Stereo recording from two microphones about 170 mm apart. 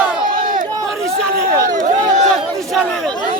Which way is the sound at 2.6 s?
5° left (ahead or behind).